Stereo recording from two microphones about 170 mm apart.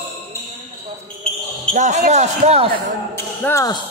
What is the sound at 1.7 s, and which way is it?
Speech, 45° right (ahead or behind).